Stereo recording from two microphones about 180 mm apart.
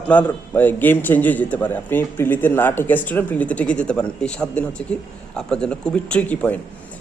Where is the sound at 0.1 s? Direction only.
10° left (ahead or behind).